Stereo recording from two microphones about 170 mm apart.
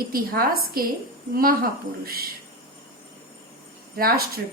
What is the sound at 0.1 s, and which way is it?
A woman's voice, 60° right (ahead or behind).